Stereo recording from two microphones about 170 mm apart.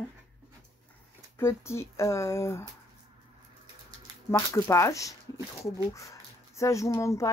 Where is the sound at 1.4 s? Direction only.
15° left (ahead or behind).